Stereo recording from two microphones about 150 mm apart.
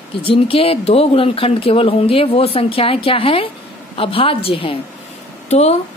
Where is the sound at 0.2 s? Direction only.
40° left (ahead or behind).